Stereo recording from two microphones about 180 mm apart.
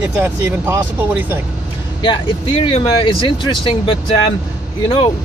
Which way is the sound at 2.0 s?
30° left (ahead or behind).